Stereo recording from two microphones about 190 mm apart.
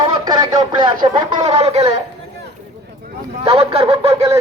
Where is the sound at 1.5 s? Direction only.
35° right (ahead or behind).